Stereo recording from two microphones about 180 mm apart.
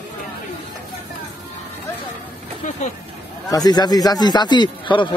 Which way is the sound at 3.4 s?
20° left (ahead or behind).